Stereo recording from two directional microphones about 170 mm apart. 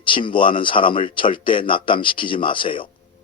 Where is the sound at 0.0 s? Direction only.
30° left (ahead or behind).